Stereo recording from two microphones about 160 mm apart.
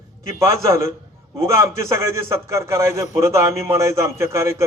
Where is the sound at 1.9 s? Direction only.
15° right (ahead or behind).